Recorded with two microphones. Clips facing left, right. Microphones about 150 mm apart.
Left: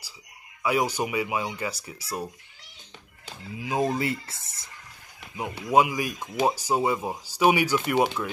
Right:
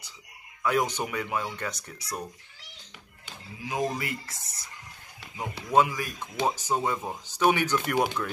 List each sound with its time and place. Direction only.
0.6 s speech: 10° left (ahead or behind)
3.6 s speech: 25° left (ahead or behind)
5.7 s speech: 10° left (ahead or behind)